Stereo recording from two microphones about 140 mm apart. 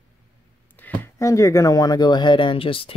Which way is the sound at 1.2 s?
20° left (ahead or behind).